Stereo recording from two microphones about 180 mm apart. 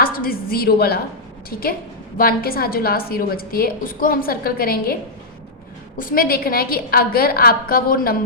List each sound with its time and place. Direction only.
0.0 s a woman's voice: 55° left (ahead or behind)
2.1 s a woman's voice: 55° left (ahead or behind)
6.0 s a woman's voice: 50° left (ahead or behind)